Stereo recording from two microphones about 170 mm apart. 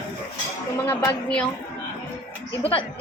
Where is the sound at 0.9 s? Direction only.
10° left (ahead or behind).